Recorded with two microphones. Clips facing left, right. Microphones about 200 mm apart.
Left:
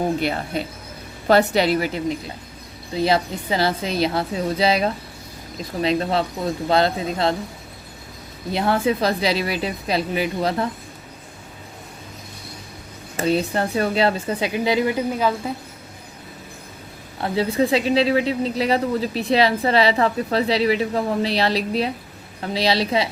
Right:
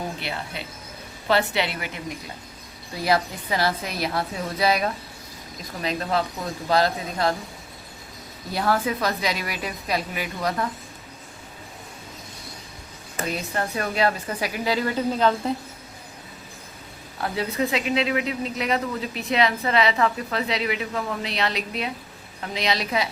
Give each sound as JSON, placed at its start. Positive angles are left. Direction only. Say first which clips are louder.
{"t": 0.2, "sound": "a woman's voice", "louder": "left 9 dB", "side_deg": 45}
{"t": 8.5, "sound": "a woman's voice", "louder": "left 4 dB", "side_deg": 25}
{"t": 13.1, "sound": "a woman's voice", "louder": "left 7 dB", "side_deg": 30}
{"t": 17.2, "sound": "speech", "louder": "left 5 dB", "side_deg": 25}